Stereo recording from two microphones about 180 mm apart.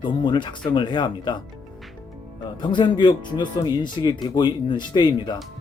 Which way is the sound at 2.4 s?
25° left (ahead or behind).